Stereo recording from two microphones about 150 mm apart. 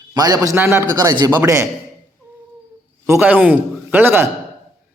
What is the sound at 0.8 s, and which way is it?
Speech, 25° right (ahead or behind).